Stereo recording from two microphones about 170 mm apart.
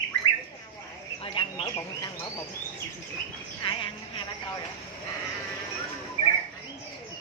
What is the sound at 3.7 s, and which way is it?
Speech, 30° left (ahead or behind).